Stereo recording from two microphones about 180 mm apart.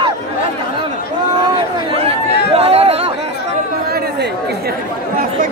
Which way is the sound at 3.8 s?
60° right (ahead or behind).